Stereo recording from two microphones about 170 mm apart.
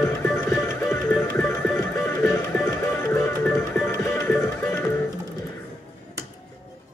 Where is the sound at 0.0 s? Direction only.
15° left (ahead or behind).